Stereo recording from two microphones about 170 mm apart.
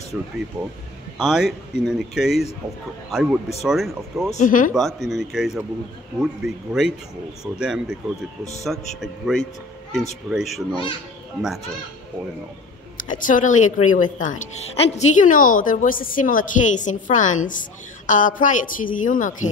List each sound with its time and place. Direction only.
1.1 s speech: 5° right (ahead or behind)
4.4 s speech: 50° left (ahead or behind)
4.7 s speech: centre (ahead or behind)
12.9 s speech: 50° left (ahead or behind)